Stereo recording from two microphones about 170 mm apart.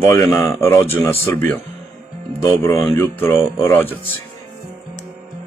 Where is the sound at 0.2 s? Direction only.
15° left (ahead or behind).